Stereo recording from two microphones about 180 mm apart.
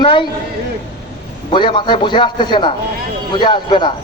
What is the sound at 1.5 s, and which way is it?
Speech, 25° left (ahead or behind).